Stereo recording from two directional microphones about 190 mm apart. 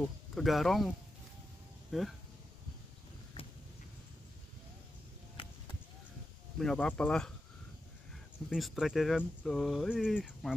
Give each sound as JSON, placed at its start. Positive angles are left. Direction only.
{"t": 0.3, "sound": "speech", "side_deg": 0}
{"t": 5.4, "sound": "a sound", "side_deg": 25}
{"t": 6.6, "sound": "speech", "side_deg": 5}